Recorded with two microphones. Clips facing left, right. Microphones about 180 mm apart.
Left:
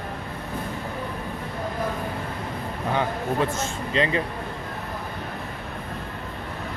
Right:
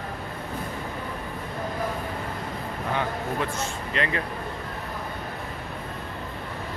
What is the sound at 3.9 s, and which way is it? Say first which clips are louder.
Speech: left 5 dB; 25° left (ahead or behind).